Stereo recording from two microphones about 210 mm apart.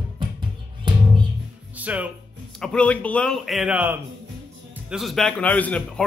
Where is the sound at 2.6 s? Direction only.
5° left (ahead or behind).